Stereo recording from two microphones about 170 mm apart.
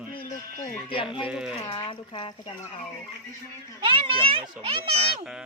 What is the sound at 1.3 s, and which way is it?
Speech, 5° right (ahead or behind).